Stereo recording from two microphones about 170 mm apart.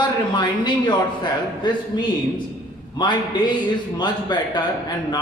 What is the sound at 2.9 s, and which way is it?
A man's voice, 25° left (ahead or behind).